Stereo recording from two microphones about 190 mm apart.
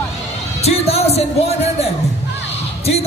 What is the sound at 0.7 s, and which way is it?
Music, 35° left (ahead or behind).